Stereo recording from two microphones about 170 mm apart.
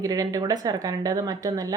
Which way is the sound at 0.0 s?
20° right (ahead or behind).